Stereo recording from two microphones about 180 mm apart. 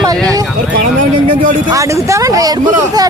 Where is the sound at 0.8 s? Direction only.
50° right (ahead or behind).